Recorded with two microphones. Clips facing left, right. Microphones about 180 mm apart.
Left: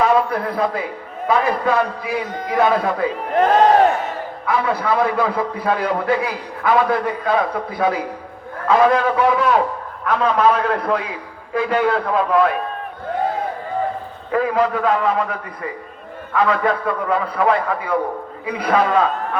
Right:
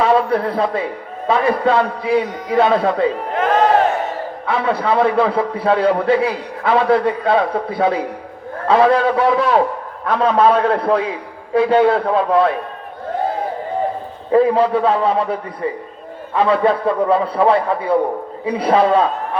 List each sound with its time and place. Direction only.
0.0 s a man's voice: 30° right (ahead or behind)
3.3 s crowd: 35° left (ahead or behind)
4.4 s a man's voice: 30° right (ahead or behind)
14.3 s a man's voice: 30° right (ahead or behind)